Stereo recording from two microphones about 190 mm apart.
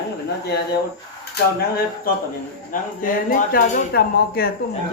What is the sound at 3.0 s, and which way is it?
Speech, 45° left (ahead or behind).